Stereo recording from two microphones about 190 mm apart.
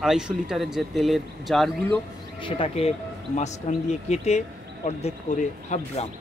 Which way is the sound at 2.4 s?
30° left (ahead or behind).